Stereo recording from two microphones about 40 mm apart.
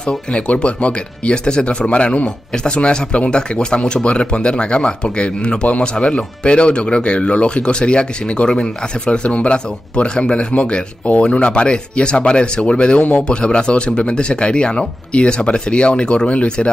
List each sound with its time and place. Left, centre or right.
0.3 s speech: left